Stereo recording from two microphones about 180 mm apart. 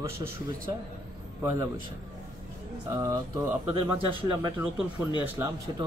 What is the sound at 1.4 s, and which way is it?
Speech, 20° right (ahead or behind).